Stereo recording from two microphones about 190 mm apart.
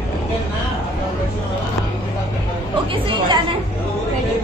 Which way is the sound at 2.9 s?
25° right (ahead or behind).